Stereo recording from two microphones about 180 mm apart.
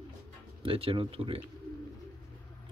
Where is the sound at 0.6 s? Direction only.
30° right (ahead or behind).